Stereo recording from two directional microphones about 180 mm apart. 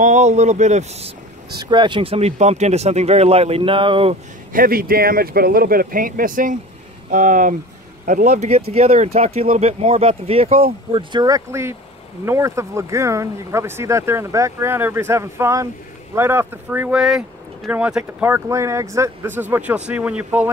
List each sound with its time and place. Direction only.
0.0 s speech: 40° right (ahead or behind)
1.6 s speech: 25° right (ahead or behind)
4.5 s speech: 50° right (ahead or behind); by 20.4 s 10° right (ahead or behind)